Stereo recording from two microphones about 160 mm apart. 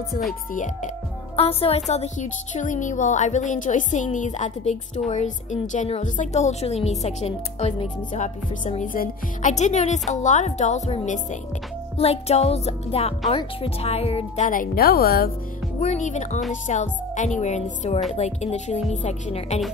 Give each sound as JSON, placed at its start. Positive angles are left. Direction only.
{"t": 0.3, "sound": "speech", "side_deg": 60}
{"t": 1.3, "sound": "music", "side_deg": 35}
{"t": 1.9, "sound": "a woman's voice", "side_deg": 45}
{"t": 12.0, "sound": "music", "side_deg": 40}
{"t": 14.4, "sound": "speech", "side_deg": 60}
{"t": 15.8, "sound": "a woman's voice", "side_deg": 45}